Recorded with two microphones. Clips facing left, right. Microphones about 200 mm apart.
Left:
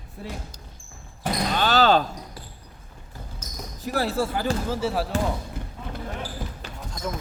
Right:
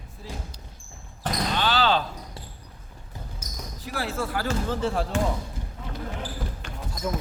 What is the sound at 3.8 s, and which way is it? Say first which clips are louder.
Speech: left 5 dB; 40° left (ahead or behind).